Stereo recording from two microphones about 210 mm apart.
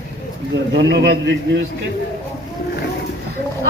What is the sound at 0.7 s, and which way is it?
Speech, 50° right (ahead or behind).